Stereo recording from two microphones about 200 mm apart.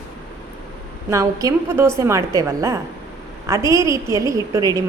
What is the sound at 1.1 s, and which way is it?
A woman's voice, 15° right (ahead or behind).